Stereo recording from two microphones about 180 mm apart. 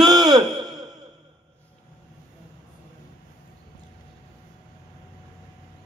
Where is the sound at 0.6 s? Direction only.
20° right (ahead or behind).